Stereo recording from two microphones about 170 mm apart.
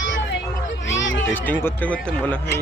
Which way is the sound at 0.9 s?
90° left.